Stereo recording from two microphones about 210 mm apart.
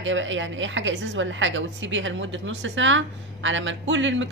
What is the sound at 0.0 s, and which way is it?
A woman's voice, 60° right (ahead or behind).